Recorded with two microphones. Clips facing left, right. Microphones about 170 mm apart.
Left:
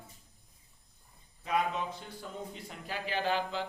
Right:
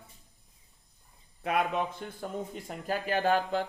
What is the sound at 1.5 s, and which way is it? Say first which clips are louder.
Speech: right 3 dB; 60° right (ahead or behind).